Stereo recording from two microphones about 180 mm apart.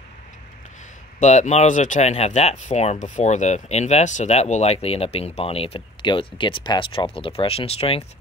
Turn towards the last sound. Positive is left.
turn(degrees=35)  # may be behind; listen again after turning